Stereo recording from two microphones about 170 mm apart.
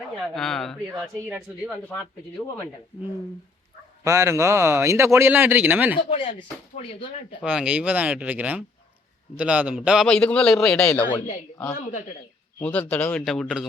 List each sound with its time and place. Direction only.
0.3 s a man's voice: 5° left (ahead or behind)
4.0 s speech: 15° right (ahead or behind)
6.1 s speech: 35° left (ahead or behind)
7.4 s a man's voice: 10° right (ahead or behind)
11.7 s speech: 45° left (ahead or behind)
12.6 s speech: 10° left (ahead or behind)